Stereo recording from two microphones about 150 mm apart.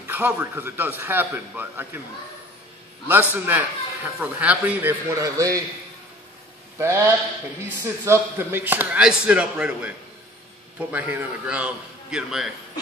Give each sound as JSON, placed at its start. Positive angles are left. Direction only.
{"t": 0.0, "sound": "a man's voice", "side_deg": -15}
{"t": 3.1, "sound": "a man's voice", "side_deg": -15}
{"t": 6.8, "sound": "a man's voice", "side_deg": -20}